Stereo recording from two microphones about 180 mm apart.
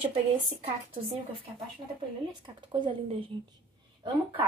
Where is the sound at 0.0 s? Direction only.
30° right (ahead or behind).